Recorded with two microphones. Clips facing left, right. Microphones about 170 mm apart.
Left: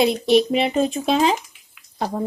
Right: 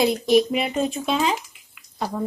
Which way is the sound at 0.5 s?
30° left (ahead or behind).